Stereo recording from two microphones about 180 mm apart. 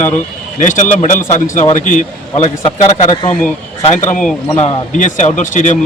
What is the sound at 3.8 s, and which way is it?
Speech, 45° left (ahead or behind).